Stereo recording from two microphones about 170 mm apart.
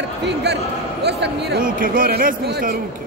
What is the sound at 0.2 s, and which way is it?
A man's voice, 80° right.